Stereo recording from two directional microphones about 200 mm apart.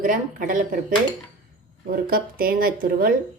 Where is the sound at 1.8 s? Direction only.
45° right (ahead or behind).